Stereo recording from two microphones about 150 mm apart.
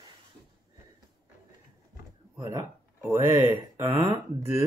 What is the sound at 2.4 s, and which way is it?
Speech, 20° right (ahead or behind).